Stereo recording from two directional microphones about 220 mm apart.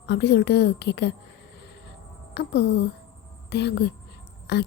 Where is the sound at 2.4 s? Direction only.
50° left (ahead or behind).